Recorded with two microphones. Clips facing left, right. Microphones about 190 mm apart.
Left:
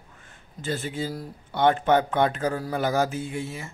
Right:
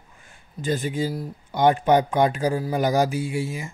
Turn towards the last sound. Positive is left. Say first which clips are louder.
# right 4 dB
turn(degrees=-10)  # may be behind; listen again after turning